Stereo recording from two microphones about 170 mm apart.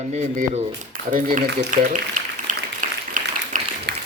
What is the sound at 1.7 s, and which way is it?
Speech, 50° right (ahead or behind).